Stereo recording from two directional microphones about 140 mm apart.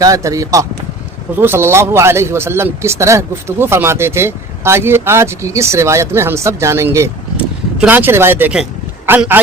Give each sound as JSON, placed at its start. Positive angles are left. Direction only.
{"t": 0.0, "sound": "a man's voice", "side_deg": -25}